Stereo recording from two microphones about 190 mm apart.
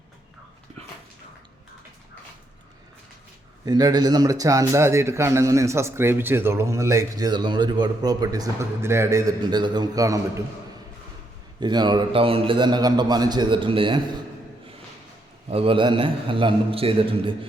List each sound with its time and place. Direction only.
3.7 s a man's voice: 20° right (ahead or behind)
11.6 s a man's voice: 25° right (ahead or behind)
15.4 s a man's voice: 30° right (ahead or behind)